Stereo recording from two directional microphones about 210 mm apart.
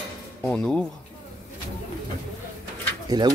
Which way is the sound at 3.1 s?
20° right (ahead or behind).